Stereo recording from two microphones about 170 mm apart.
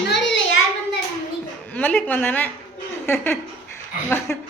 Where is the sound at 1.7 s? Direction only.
10° left (ahead or behind).